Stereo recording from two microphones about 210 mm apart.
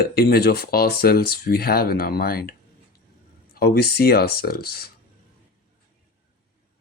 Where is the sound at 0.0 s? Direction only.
50° left (ahead or behind).